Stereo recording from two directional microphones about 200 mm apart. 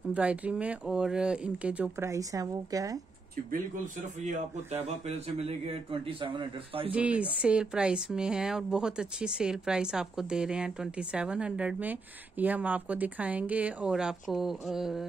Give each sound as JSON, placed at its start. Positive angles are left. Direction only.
{"t": 0.1, "sound": "speech", "side_deg": -5}
{"t": 3.7, "sound": "a man's voice", "side_deg": -40}
{"t": 6.9, "sound": "speech", "side_deg": -5}